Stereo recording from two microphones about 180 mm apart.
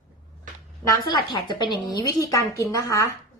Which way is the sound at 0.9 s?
25° left (ahead or behind).